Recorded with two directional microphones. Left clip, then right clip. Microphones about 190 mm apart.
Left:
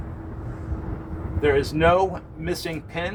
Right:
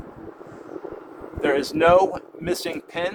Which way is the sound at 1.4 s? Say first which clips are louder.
Even; 70° right (ahead or behind).